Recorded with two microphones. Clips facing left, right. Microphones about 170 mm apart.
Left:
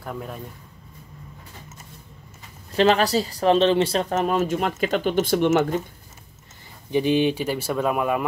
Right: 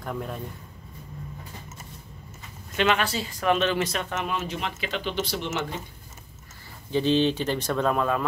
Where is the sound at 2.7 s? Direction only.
35° left (ahead or behind).